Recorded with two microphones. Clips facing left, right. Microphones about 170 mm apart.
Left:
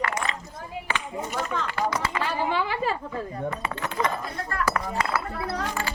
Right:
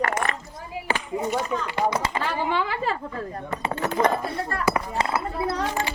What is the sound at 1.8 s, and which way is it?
Speech, 30° right (ahead or behind).